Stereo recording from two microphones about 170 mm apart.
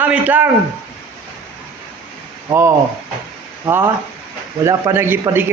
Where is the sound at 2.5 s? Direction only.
15° right (ahead or behind).